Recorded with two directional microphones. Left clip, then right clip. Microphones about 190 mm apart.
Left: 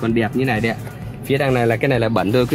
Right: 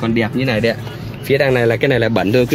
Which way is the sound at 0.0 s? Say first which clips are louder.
Right 2 dB; 5° right (ahead or behind).